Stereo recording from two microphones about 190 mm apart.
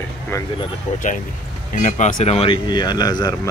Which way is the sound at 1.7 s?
40° left (ahead or behind).